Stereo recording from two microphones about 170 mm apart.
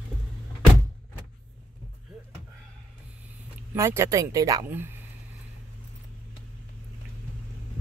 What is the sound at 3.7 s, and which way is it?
Speech, 15° right (ahead or behind).